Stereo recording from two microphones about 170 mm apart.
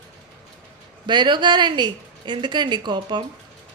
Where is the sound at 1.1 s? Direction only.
25° right (ahead or behind).